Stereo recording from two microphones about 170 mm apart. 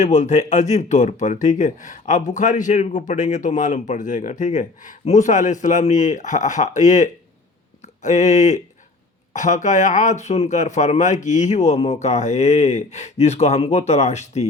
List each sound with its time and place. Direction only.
0.0 s speech: 45° left (ahead or behind)